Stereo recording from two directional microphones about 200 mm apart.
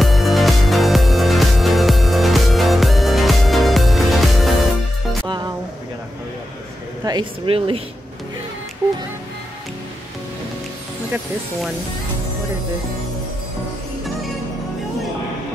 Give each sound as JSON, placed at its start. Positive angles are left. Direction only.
{"t": 0.0, "sound": "music", "side_deg": 0}
{"t": 7.1, "sound": "speech", "side_deg": -25}